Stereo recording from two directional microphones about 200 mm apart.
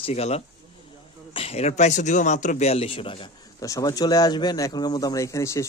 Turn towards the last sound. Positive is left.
turn(degrees=15)  # may be behind; listen again after turning